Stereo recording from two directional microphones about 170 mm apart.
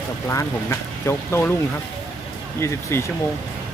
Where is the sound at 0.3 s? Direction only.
15° left (ahead or behind).